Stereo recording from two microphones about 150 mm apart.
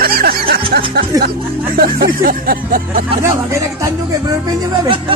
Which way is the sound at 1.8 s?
80° right.